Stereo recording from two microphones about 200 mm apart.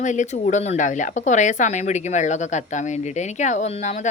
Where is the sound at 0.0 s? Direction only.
35° left (ahead or behind).